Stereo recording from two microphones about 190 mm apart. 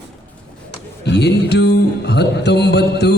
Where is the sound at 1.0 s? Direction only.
60° left (ahead or behind).